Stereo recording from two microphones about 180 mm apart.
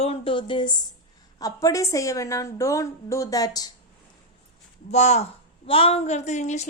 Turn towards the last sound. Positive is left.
turn(degrees=40)  # may be behind; listen again after turning